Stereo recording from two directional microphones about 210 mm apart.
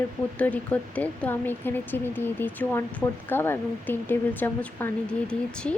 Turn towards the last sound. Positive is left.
turn(degrees=5)  # may be behind; listen again after turning